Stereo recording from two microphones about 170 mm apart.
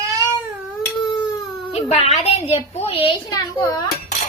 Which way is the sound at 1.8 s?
40° left (ahead or behind).